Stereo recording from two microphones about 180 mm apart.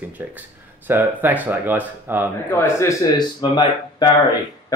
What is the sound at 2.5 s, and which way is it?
Speech, 15° left (ahead or behind).